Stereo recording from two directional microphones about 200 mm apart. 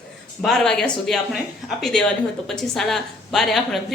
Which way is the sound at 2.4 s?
Centre (ahead or behind).